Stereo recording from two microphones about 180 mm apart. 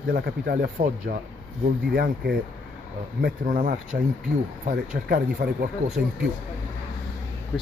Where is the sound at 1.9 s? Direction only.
65° right (ahead or behind).